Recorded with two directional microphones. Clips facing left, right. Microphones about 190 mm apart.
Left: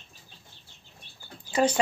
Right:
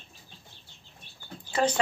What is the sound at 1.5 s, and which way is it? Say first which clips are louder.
Bird: left 2 dB; 10° left (ahead or behind).